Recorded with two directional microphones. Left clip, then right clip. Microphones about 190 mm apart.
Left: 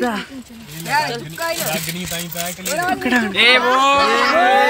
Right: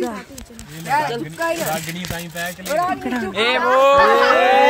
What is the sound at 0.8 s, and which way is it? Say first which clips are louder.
Speech: even; 45° right (ahead or behind).